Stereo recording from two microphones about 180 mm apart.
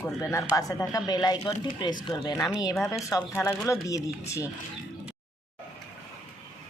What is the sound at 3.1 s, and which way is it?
A woman's voice, 15° left (ahead or behind).